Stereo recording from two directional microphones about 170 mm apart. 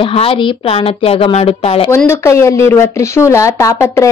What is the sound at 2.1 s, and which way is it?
A woman's voice, 15° left (ahead or behind).